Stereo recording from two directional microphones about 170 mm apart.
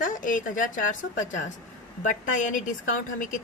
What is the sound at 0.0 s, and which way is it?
A woman's voice, 50° left (ahead or behind).